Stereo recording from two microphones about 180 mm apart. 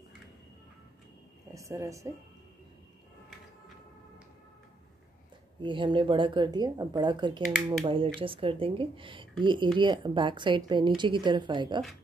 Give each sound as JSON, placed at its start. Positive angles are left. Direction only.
{"t": 1.5, "sound": "a woman's voice", "side_deg": -15}
{"t": 5.6, "sound": "a woman's voice", "side_deg": -25}